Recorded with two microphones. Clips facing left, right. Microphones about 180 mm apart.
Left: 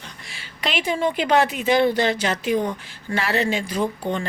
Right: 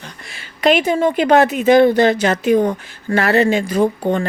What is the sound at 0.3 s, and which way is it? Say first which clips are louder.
Speech: right 13 dB; 50° right (ahead or behind).